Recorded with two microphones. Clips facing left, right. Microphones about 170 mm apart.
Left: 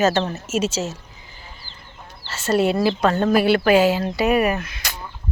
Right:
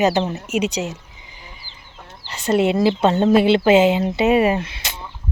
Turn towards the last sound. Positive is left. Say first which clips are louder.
# right 3 dB
turn(degrees=-30)  # may be behind; listen again after turning